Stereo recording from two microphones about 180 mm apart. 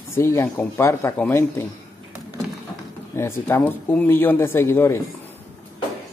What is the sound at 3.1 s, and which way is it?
Speech, 15° left (ahead or behind).